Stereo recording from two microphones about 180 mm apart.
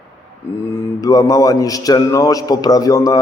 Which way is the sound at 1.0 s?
20° left (ahead or behind).